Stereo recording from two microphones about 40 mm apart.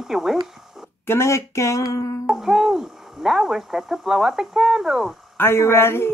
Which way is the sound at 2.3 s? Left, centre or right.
Centre.